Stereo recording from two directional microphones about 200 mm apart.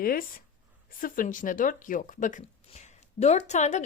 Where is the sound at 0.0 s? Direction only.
45° left (ahead or behind).